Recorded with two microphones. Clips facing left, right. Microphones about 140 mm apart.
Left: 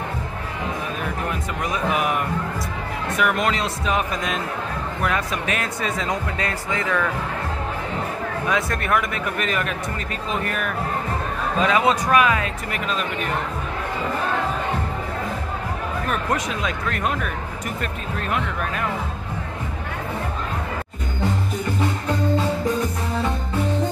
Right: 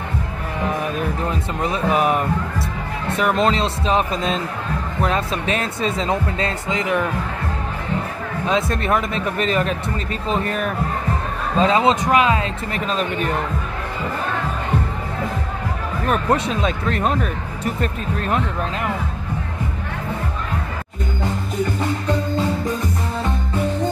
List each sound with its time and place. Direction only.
1.3 s speech: 30° right (ahead or behind)
8.5 s speech: 25° right (ahead or behind)
16.1 s speech: 30° right (ahead or behind)
18.3 s speech: 25° right (ahead or behind)